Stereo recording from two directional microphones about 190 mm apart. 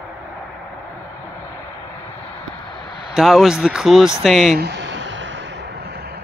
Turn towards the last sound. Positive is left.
turn(degrees=-70)  # may be behind; listen again after turning